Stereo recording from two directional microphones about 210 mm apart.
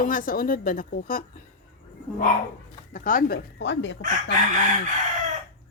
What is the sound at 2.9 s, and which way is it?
Speech, 40° left (ahead or behind).